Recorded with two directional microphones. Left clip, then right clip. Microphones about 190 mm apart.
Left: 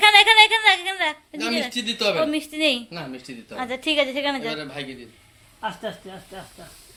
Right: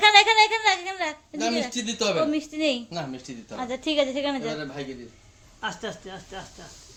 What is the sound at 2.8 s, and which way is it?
Speech, 55° right (ahead or behind).